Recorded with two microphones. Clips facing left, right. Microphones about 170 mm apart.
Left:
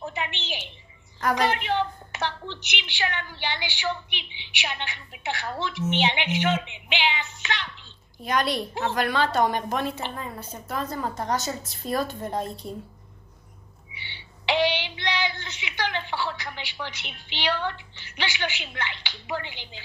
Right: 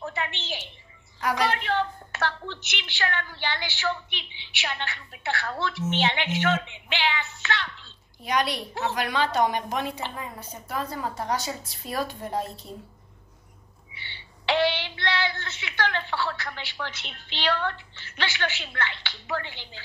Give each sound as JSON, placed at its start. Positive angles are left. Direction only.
{"t": 0.0, "sound": "a sound", "side_deg": 15}
{"t": 1.3, "sound": "a woman's voice", "side_deg": 15}
{"t": 8.2, "sound": "a woman's voice", "side_deg": -15}
{"t": 13.9, "sound": "a woman's voice", "side_deg": 15}